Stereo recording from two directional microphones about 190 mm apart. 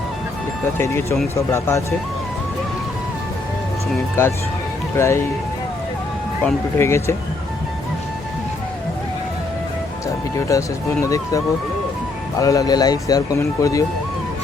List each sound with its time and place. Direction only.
1.4 s speech: 15° left (ahead or behind)
4.1 s speech: 15° left (ahead or behind)
6.4 s speech: 15° left (ahead or behind)
10.5 s speech: 15° left (ahead or behind)